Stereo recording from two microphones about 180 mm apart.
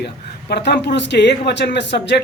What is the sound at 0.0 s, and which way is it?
Speech, 65° left (ahead or behind).